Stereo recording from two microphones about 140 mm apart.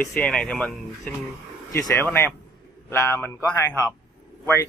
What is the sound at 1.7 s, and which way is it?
Speech, 20° left (ahead or behind).